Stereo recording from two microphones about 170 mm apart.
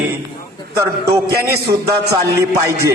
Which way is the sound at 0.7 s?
15° right (ahead or behind).